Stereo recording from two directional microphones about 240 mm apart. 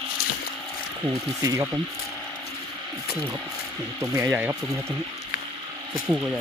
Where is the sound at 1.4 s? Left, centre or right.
Centre.